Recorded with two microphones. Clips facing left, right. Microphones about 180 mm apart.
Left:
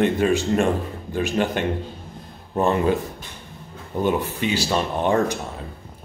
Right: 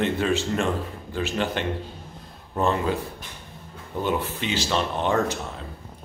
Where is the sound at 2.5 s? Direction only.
15° left (ahead or behind).